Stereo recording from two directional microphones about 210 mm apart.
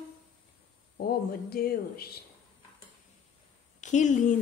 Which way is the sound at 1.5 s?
45° left (ahead or behind).